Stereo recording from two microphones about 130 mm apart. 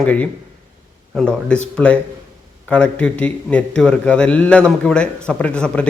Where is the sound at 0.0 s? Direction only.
10° left (ahead or behind).